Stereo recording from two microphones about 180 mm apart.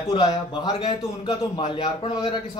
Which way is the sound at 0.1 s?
25° left (ahead or behind).